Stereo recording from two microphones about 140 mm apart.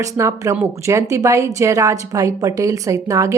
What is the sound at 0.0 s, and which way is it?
A woman's voice, 20° right (ahead or behind).